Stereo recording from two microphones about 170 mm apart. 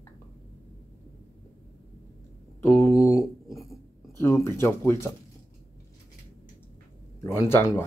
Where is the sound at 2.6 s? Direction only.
15° left (ahead or behind).